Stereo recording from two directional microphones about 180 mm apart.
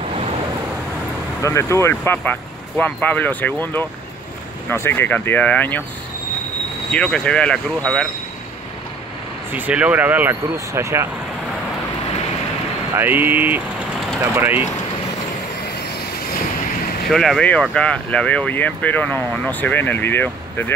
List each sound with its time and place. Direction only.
1.4 s speech: 15° left (ahead or behind)
6.9 s speech: 5° left (ahead or behind)
9.5 s speech: 10° right (ahead or behind)
12.9 s speech: 10° right (ahead or behind)
17.1 s speech: centre (ahead or behind)